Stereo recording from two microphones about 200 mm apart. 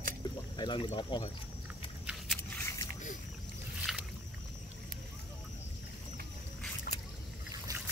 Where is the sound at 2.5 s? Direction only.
15° left (ahead or behind).